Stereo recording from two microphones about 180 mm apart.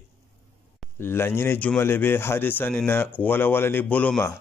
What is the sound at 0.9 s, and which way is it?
Speech, 10° left (ahead or behind).